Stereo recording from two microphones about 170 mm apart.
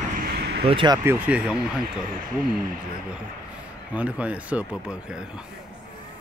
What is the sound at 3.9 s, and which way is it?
Speech, 10° right (ahead or behind).